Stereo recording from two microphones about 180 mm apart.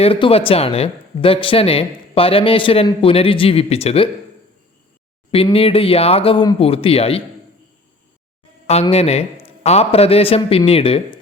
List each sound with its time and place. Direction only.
0.0 s speech: 30° left (ahead or behind)
5.3 s speech: 30° left (ahead or behind)
8.6 s speech: 35° left (ahead or behind)